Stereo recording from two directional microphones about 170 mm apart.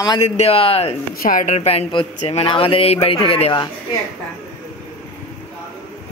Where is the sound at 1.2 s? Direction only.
55° left (ahead or behind); by 3.7 s 30° left (ahead or behind).